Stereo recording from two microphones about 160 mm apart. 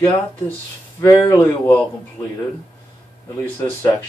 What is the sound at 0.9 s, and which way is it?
Speech, 20° left (ahead or behind).